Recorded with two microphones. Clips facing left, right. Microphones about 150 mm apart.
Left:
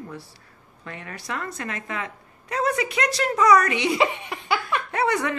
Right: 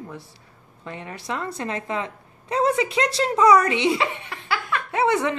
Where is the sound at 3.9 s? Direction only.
15° left (ahead or behind).